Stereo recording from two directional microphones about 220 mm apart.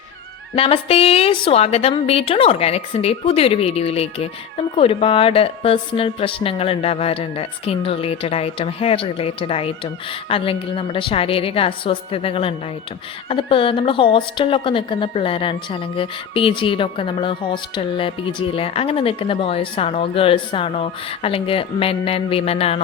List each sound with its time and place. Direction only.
0.5 s a woman's voice: 25° left (ahead or behind)